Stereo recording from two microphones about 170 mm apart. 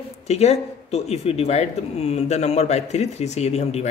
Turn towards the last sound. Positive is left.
turn(degrees=40)  # may be behind; listen again after turning